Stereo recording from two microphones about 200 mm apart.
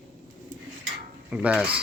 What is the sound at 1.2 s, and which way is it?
Speech, 5° right (ahead or behind).